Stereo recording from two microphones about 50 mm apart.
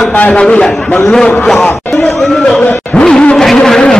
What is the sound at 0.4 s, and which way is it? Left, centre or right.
Speech, centre.